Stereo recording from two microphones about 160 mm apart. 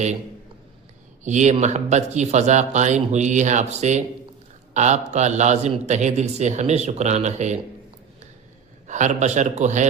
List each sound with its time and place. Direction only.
1.2 s speech: 50° right (ahead or behind)
8.9 s speech: 50° right (ahead or behind)